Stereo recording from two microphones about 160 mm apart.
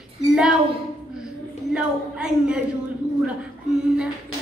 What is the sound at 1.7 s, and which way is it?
Speech, 5° right (ahead or behind).